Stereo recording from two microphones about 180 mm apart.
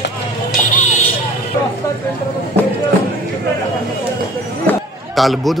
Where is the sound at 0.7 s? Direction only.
45° left (ahead or behind).